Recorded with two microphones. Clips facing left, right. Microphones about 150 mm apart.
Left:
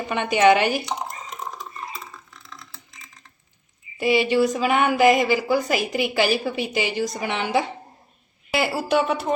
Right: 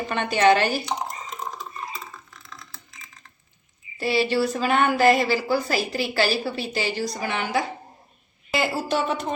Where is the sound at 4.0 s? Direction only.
15° left (ahead or behind).